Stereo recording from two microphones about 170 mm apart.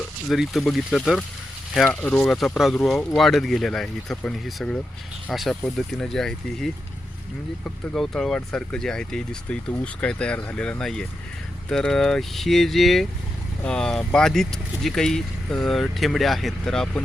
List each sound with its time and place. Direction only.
0.3 s speech: centre (ahead or behind)
7.9 s speech: centre (ahead or behind)